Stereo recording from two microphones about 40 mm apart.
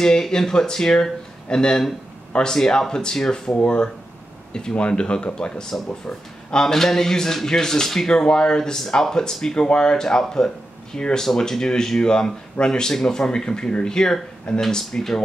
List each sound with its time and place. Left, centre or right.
0.0 s speech: centre
6.6 s speech: centre